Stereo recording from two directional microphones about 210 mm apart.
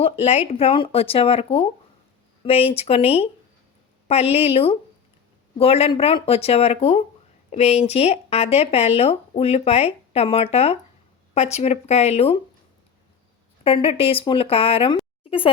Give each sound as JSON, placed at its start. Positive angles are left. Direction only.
{"t": 0.0, "sound": "speech", "side_deg": 30}
{"t": 13.7, "sound": "speech", "side_deg": 25}
{"t": 15.2, "sound": "a sound", "side_deg": 25}